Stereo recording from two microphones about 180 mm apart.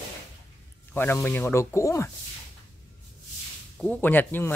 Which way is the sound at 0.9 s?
10° left (ahead or behind).